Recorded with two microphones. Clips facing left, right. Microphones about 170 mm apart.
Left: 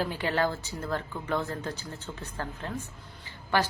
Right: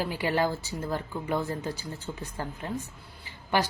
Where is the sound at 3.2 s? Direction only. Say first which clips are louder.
Even; 10° right (ahead or behind).